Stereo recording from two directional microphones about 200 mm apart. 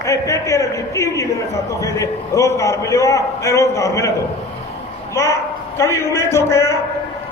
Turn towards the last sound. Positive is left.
turn(degrees=15)  # may be behind; listen again after turning